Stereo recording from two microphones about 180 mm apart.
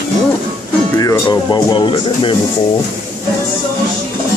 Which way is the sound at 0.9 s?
20° left (ahead or behind).